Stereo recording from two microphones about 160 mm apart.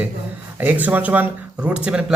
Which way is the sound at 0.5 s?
10° right (ahead or behind).